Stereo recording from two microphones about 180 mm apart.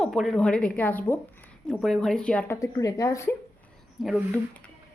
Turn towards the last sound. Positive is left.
turn(degrees=5)  # may be behind; listen again after turning